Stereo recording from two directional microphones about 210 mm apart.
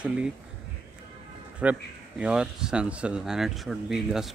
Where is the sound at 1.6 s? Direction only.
5° right (ahead or behind).